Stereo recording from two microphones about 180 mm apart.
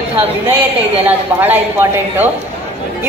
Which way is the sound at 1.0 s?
10° right (ahead or behind).